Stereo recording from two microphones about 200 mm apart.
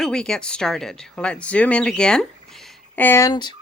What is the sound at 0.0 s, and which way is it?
Speech, 5° left (ahead or behind).